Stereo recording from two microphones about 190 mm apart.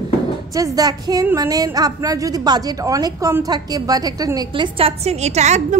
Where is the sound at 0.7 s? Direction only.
20° right (ahead or behind).